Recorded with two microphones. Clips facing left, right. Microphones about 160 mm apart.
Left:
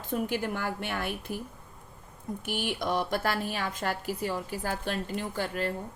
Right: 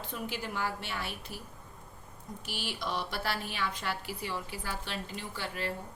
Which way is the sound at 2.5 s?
55° left (ahead or behind).